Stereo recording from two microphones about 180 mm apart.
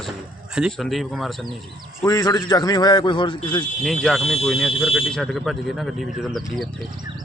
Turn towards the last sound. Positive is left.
turn(degrees=0)  # may be behind; listen again after turning